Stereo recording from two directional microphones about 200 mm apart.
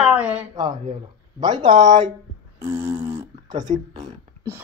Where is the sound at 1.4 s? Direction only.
20° right (ahead or behind).